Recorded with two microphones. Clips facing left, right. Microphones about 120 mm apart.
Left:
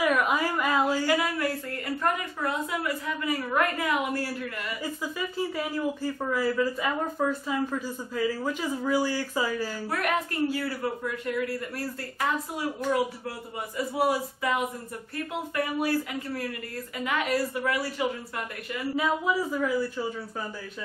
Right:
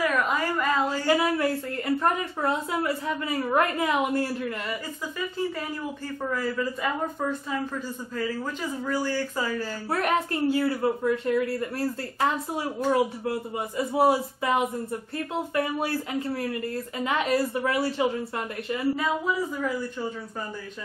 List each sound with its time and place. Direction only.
0.0 s a sound: 10° left (ahead or behind)
1.0 s a woman's voice: 25° right (ahead or behind)
6.3 s speech: 10° left (ahead or behind)
9.8 s a woman's voice: 30° right (ahead or behind)
18.9 s speech: 5° left (ahead or behind)